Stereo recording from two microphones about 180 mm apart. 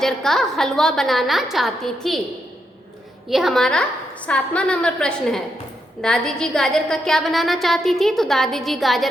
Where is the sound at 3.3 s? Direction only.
Centre (ahead or behind).